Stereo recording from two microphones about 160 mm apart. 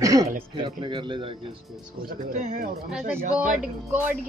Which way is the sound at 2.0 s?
55° right (ahead or behind).